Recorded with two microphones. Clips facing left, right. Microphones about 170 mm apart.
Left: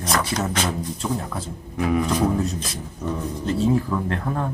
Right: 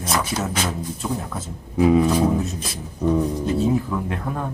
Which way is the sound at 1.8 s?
25° right (ahead or behind).